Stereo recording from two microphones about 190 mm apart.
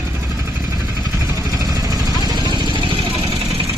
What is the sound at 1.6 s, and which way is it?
Vehicle, 20° right (ahead or behind).